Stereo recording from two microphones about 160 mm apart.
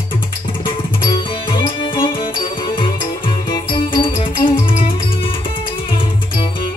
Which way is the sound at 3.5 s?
30° left (ahead or behind).